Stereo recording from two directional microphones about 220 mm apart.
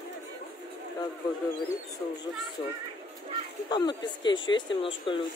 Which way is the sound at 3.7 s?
20° left (ahead or behind).